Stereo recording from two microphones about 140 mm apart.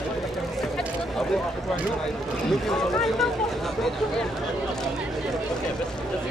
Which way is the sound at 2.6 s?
Centre (ahead or behind).